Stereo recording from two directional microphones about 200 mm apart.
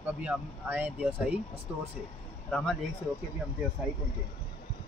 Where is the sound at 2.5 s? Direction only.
Centre (ahead or behind).